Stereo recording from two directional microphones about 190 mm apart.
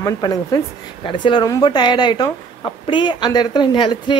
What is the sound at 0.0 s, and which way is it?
Speech, 20° left (ahead or behind).